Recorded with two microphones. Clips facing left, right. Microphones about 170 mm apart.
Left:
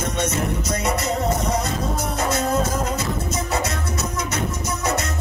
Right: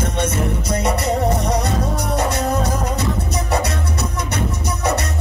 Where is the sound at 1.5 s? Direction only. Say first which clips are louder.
Right 3 dB; 65° right (ahead or behind).